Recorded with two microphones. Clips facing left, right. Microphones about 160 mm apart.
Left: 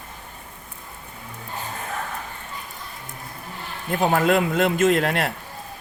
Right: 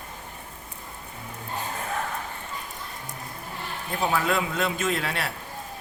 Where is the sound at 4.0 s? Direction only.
50° left (ahead or behind); by 5.0 s 75° left (ahead or behind).